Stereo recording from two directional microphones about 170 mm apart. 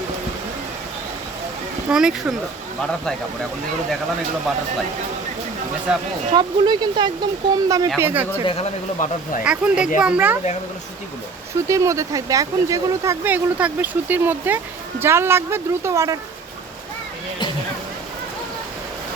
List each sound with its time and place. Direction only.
1.9 s speech: 5° right (ahead or behind)
5.9 s speech: 5° right (ahead or behind)
6.3 s speech: 25° right (ahead or behind)
7.9 s speech: 10° right (ahead or behind)
9.0 s speech: 45° left (ahead or behind)
9.4 s speech: 5° right (ahead or behind)
11.7 s speech: 20° right (ahead or behind)